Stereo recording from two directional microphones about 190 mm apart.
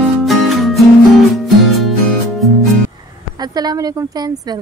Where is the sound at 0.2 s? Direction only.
Centre (ahead or behind).